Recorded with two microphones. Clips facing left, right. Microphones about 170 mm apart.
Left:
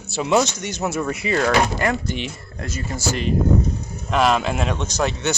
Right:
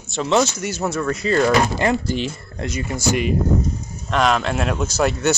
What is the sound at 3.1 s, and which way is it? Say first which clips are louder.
Speech: right 3 dB; 10° right (ahead or behind).